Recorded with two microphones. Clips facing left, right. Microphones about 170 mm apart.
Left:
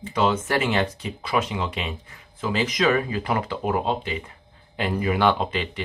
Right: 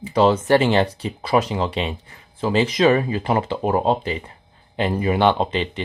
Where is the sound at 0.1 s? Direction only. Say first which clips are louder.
Right 7 dB; 35° right (ahead or behind).